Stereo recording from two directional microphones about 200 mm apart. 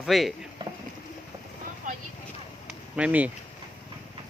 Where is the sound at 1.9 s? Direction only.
40° right (ahead or behind).